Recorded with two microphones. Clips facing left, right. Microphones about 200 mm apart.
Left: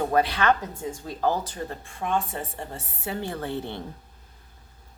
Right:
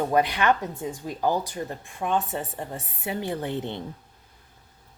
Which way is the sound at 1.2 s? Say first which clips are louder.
Even; 15° right (ahead or behind).